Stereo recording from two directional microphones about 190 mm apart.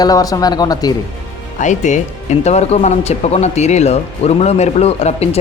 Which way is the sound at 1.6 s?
40° left (ahead or behind).